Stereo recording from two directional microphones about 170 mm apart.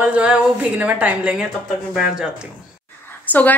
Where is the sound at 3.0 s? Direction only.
10° left (ahead or behind).